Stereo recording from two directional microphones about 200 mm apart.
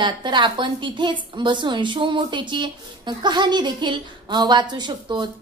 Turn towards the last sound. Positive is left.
turn(degrees=-20)  # may be behind; listen again after turning